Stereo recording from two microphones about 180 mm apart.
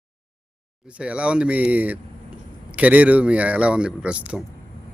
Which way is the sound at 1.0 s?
5° right (ahead or behind).